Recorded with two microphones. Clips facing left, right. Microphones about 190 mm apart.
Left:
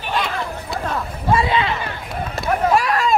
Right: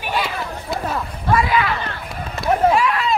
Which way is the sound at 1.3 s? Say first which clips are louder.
Even; 25° left (ahead or behind).